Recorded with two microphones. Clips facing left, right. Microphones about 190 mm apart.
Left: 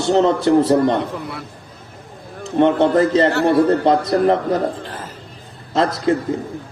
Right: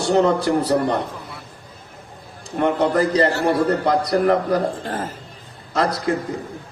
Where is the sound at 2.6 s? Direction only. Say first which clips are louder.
Left 4 dB; 25° left (ahead or behind).